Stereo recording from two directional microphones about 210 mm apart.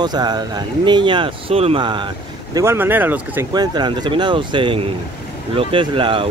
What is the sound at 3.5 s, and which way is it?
Speech, 20° right (ahead or behind).